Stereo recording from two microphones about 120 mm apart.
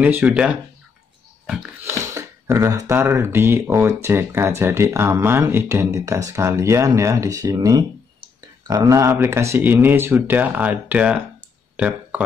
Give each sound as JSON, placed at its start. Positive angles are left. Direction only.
{"t": 0.0, "sound": "speech", "side_deg": -15}
{"t": 1.9, "sound": "speech", "side_deg": -25}
{"t": 11.7, "sound": "a sound", "side_deg": -10}